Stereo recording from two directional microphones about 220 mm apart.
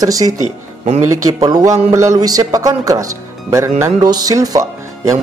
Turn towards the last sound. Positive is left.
turn(degrees=-15)  # may be behind; listen again after turning